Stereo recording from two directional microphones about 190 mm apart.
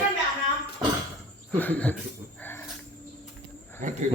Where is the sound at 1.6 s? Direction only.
10° left (ahead or behind).